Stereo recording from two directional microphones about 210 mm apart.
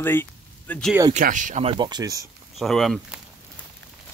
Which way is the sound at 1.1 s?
35° right (ahead or behind).